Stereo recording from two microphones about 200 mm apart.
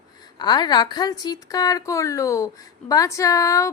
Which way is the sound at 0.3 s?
20° left (ahead or behind).